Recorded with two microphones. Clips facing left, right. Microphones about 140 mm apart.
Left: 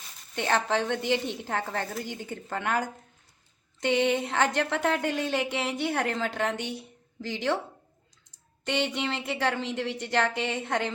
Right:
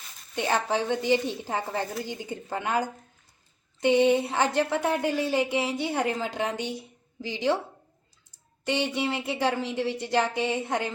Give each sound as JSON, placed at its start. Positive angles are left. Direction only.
{"t": 0.3, "sound": "a woman's voice", "side_deg": -10}